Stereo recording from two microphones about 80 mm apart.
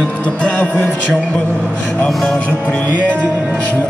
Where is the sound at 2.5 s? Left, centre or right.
Centre.